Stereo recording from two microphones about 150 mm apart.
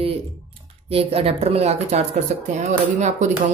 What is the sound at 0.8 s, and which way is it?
Speech, 40° right (ahead or behind).